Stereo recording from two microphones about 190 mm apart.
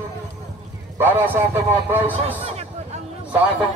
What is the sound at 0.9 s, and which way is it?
A man's voice, 10° right (ahead or behind).